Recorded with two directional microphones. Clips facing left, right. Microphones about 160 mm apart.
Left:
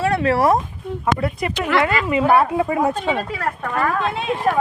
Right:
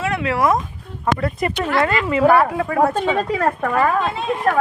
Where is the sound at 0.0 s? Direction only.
35° left (ahead or behind).